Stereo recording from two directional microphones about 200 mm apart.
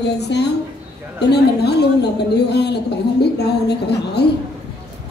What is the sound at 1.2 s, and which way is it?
A woman's voice, 55° left (ahead or behind).